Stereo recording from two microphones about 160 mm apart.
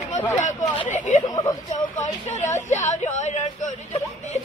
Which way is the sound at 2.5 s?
45° left (ahead or behind).